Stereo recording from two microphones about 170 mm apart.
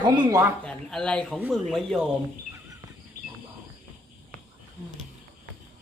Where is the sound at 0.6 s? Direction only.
5° left (ahead or behind).